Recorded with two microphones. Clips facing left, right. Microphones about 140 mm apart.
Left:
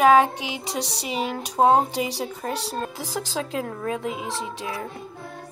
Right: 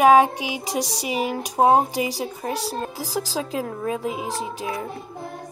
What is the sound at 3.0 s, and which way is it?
Speech, 35° right (ahead or behind).